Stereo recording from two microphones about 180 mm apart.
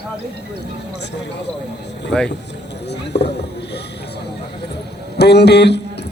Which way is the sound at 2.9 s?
70° left (ahead or behind).